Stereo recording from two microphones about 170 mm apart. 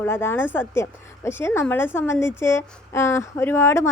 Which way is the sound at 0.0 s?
15° left (ahead or behind).